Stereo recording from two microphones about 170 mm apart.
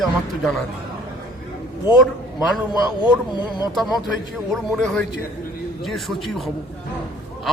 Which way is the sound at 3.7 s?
Centre (ahead or behind).